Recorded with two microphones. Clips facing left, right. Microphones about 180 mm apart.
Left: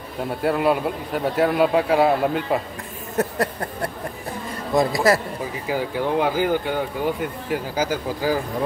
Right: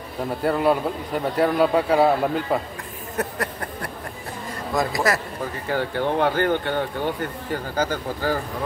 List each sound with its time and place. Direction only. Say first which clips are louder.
0.4 s a man's voice: even; centre (ahead or behind)
3.2 s a sound: left 4 dB; 25° left (ahead or behind)
5.4 s speech: even; 5° left (ahead or behind)